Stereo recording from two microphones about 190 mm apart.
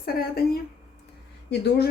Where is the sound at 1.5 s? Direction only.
60° left (ahead or behind).